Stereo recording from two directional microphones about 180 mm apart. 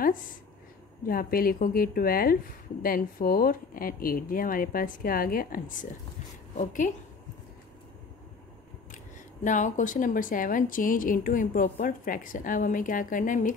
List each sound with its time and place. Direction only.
1.0 s a woman's voice: 55° left (ahead or behind)
8.9 s a woman's voice: 45° left (ahead or behind)